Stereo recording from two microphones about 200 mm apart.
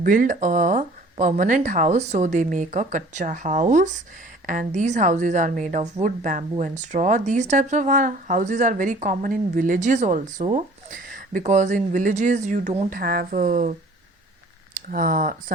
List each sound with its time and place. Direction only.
0.0 s a woman's voice: 45° right (ahead or behind)
12.9 s a woman's voice: 50° right (ahead or behind)